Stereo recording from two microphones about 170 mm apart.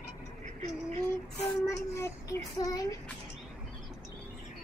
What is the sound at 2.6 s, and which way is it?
Speech, 20° left (ahead or behind).